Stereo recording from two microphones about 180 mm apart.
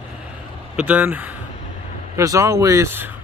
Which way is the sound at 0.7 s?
10° right (ahead or behind).